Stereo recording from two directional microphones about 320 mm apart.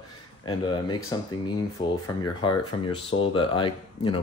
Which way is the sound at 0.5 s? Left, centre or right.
Centre.